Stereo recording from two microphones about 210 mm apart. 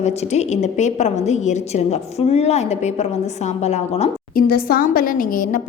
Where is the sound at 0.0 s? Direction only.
30° left (ahead or behind).